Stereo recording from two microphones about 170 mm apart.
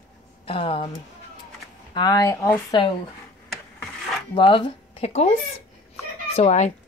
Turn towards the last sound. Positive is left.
turn(degrees=40)  # may be behind; listen again after turning